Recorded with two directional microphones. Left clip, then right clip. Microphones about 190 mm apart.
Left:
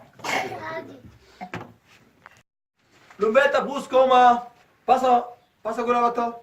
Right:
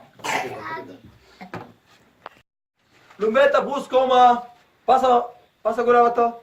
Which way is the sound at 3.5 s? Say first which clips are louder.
Right 1 dB; 5° left (ahead or behind).